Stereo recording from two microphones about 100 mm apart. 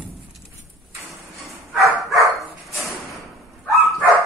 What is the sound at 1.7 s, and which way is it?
Dog, centre (ahead or behind).